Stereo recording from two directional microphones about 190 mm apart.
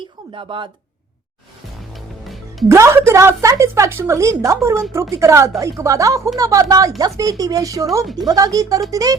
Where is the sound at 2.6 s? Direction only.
15° right (ahead or behind).